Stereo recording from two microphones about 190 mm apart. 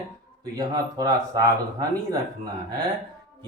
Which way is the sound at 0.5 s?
20° right (ahead or behind).